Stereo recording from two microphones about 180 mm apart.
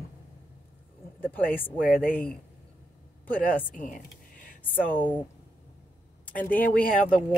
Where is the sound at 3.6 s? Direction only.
45° left (ahead or behind).